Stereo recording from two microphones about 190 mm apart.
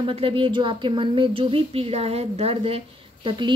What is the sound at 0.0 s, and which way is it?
A woman's voice, 30° right (ahead or behind).